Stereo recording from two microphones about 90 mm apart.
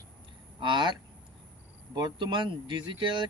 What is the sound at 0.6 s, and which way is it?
Speech, 60° right (ahead or behind).